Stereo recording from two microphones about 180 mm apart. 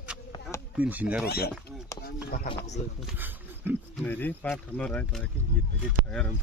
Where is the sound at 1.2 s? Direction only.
60° left (ahead or behind).